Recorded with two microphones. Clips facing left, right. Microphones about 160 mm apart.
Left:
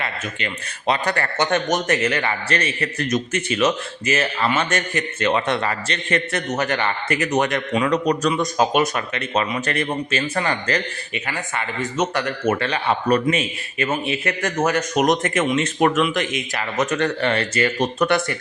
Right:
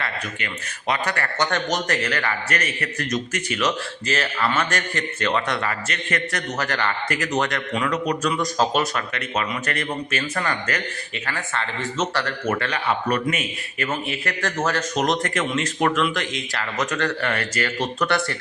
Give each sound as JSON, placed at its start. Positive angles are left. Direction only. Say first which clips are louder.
{"t": 0.0, "sound": "speech", "louder": "left 2 dB", "side_deg": 25}
{"t": 7.9, "sound": "a man's voice", "louder": "left 4 dB", "side_deg": 35}
{"t": 8.3, "sound": "speech", "louder": "left 3 dB", "side_deg": 20}
{"t": 11.1, "sound": "speech", "louder": "left 1 dB", "side_deg": 15}